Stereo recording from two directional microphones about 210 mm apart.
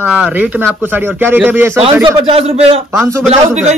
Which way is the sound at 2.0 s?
25° right (ahead or behind).